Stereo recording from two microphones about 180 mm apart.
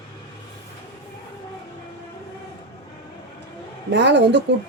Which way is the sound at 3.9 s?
70° right (ahead or behind).